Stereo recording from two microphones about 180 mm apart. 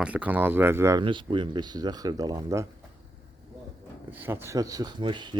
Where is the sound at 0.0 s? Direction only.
10° right (ahead or behind).